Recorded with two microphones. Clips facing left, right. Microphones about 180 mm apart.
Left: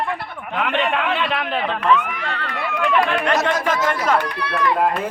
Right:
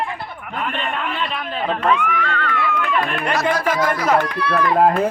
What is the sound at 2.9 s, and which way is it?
Speech, 85° left.